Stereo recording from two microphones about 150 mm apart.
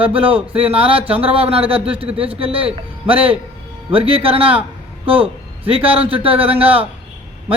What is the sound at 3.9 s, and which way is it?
A man's voice, 40° right (ahead or behind).